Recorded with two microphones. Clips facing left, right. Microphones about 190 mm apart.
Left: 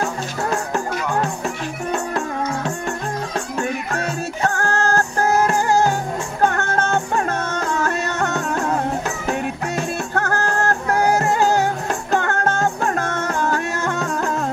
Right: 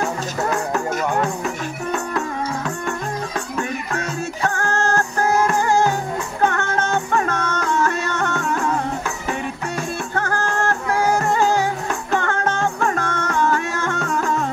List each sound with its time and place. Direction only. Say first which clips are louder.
6.4 s music: left 1 dB; 35° left (ahead or behind)
12.1 s music: left 1 dB; 40° left (ahead or behind)